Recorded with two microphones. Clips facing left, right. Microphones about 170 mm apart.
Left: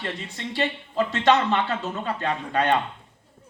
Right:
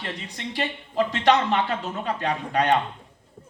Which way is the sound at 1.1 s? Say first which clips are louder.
Left 1 dB; 15° right (ahead or behind).